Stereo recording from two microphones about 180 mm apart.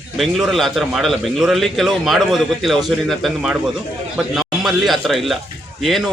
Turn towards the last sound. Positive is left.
turn(degrees=0)  # may be behind; listen again after turning